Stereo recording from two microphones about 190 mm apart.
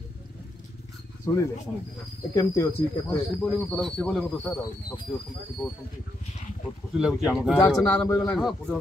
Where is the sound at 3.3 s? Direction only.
5° left (ahead or behind).